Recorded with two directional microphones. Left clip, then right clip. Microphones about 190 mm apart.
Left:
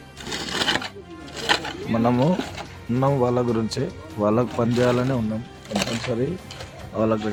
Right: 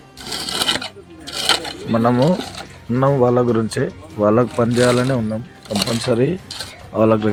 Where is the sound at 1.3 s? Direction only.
Centre (ahead or behind).